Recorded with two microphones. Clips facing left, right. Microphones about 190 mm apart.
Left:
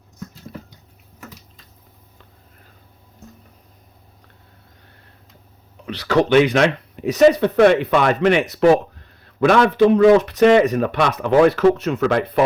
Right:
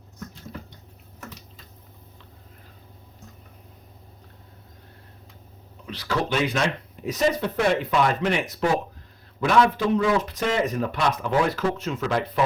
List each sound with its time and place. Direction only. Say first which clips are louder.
5.8 s speech: left 9 dB; 70° left (ahead or behind)